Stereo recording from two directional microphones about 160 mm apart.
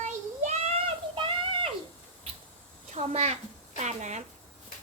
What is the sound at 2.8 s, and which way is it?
A child's voice, 45° right (ahead or behind).